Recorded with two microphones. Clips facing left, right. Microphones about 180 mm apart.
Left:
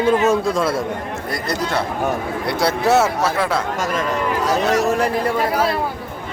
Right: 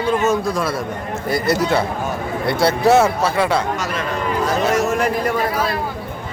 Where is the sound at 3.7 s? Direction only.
50° left (ahead or behind).